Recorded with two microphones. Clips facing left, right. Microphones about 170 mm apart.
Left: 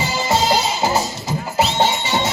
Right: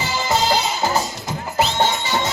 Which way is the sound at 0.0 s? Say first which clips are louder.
Left 2 dB; 25° left (ahead or behind).